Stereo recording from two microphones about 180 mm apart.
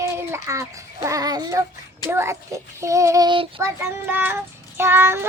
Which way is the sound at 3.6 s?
10° right (ahead or behind).